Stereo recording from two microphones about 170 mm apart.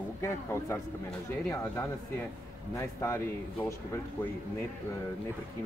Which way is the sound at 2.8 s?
15° left (ahead or behind).